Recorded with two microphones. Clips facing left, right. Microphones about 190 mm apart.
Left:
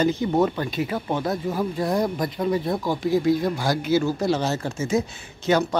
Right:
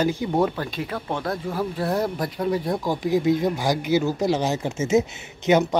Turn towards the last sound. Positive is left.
turn(degrees=-20)  # may be behind; listen again after turning